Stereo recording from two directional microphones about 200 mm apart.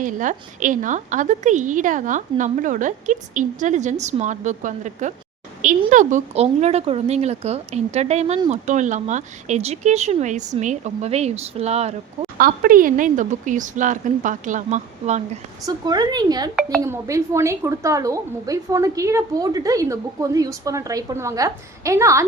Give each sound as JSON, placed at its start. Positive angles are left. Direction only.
{"t": 0.0, "sound": "a woman's voice", "side_deg": -40}
{"t": 12.4, "sound": "a woman's voice", "side_deg": -45}
{"t": 15.6, "sound": "a woman's voice", "side_deg": -20}